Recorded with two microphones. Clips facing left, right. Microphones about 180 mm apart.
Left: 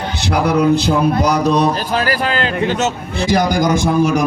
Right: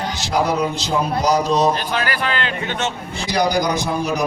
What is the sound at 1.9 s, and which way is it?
A man's voice, 40° left (ahead or behind).